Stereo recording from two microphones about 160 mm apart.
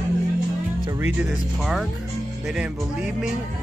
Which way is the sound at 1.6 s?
Centre (ahead or behind).